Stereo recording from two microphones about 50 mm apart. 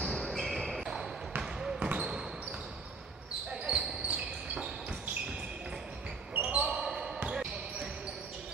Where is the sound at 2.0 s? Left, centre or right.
Centre.